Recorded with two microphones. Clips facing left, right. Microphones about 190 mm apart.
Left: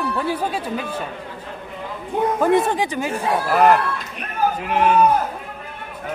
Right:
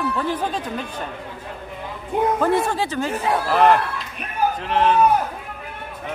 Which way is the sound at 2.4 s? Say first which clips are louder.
Left 3 dB; 15° left (ahead or behind).